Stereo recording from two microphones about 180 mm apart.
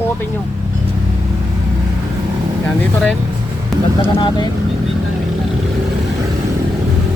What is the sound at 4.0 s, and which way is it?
Speech, 30° left (ahead or behind).